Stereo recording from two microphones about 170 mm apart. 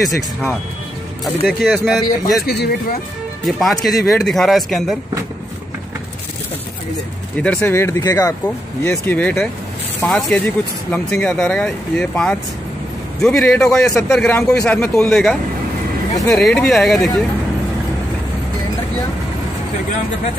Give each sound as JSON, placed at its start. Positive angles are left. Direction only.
{"t": 0.0, "sound": "speech", "side_deg": 0}
{"t": 2.4, "sound": "speech", "side_deg": 65}
{"t": 3.4, "sound": "speech", "side_deg": 0}
{"t": 7.3, "sound": "speech", "side_deg": 5}
{"t": 16.3, "sound": "speech", "side_deg": 5}